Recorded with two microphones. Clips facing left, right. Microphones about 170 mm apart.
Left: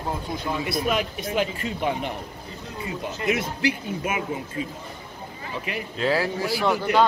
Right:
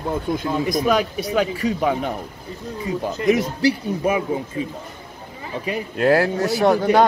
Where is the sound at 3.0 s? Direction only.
40° right (ahead or behind).